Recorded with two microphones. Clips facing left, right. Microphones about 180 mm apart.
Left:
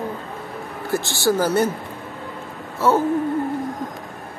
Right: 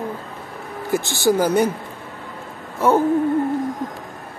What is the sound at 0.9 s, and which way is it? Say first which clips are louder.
Speech: right 2 dB; 20° right (ahead or behind).